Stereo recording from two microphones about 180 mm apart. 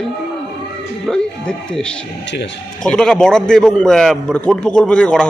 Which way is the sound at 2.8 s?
5° left (ahead or behind).